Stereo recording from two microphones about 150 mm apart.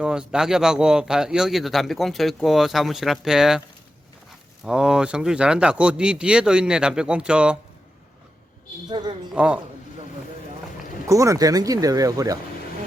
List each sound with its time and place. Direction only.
0.0 s speech: 5° right (ahead or behind)
4.6 s speech: 5° right (ahead or behind)
8.9 s speech: 30° right (ahead or behind)
9.3 s speech: 5° right (ahead or behind)
11.1 s speech: 20° right (ahead or behind)